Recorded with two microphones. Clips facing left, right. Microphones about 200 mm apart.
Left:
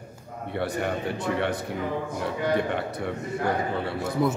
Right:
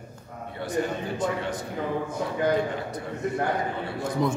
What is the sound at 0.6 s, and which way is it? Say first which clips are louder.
Speech: right 1 dB; 65° left (ahead or behind).